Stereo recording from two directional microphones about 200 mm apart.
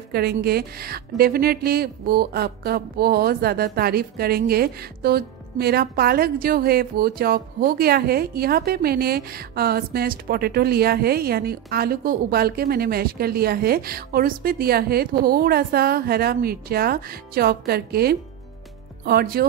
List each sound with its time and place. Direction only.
0.1 s a woman's voice: 50° right (ahead or behind)